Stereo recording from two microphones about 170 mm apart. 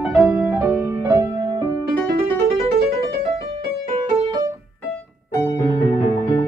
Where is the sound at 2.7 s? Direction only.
65° right (ahead or behind).